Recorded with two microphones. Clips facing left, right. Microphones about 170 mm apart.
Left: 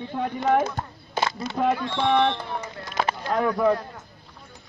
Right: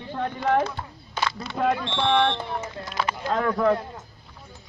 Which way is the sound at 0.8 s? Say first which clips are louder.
Left 4 dB; 45° left (ahead or behind).